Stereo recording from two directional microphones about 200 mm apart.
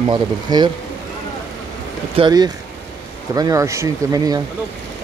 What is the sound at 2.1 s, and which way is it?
Speech, 20° right (ahead or behind).